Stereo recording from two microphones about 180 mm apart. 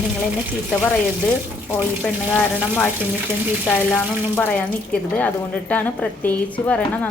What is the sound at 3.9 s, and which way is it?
A woman's voice, 10° left (ahead or behind).